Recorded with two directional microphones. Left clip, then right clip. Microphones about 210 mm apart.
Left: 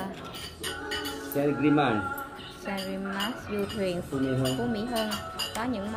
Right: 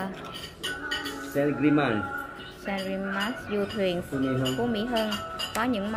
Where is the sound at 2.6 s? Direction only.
10° right (ahead or behind).